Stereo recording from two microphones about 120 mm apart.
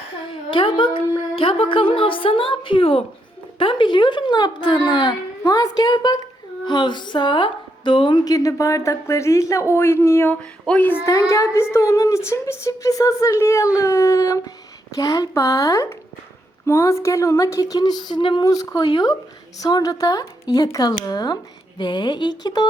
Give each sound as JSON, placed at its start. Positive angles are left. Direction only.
{"t": 0.3, "sound": "a woman's voice", "side_deg": 45}
{"t": 10.7, "sound": "child singing", "side_deg": 10}
{"t": 11.0, "sound": "a woman's voice", "side_deg": 25}
{"t": 18.4, "sound": "a woman's voice", "side_deg": 30}